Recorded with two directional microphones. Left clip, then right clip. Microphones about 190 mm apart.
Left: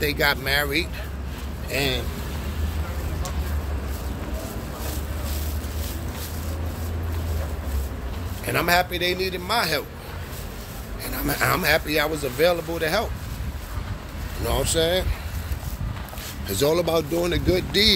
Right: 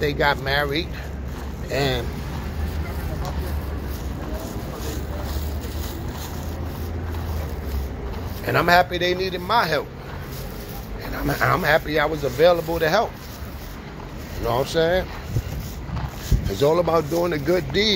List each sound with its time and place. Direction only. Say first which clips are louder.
0.0 s speech: right 1 dB; 30° left (ahead or behind)
1.7 s speech: right 2 dB; 5° left (ahead or behind)
8.5 s speech: right 4 dB; 5° left (ahead or behind)
11.2 s speech: right 2 dB; 35° left (ahead or behind)
12.4 s speech: right 5 dB; 10° left (ahead or behind)
14.4 s speech: right 2 dB; 25° left (ahead or behind)
16.4 s speech: right 2 dB; 40° left (ahead or behind)